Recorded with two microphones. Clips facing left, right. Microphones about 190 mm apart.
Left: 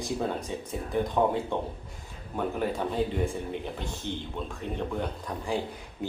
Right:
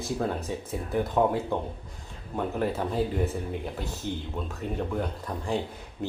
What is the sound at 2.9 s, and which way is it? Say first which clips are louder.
Speech: right 1 dB; 5° right (ahead or behind).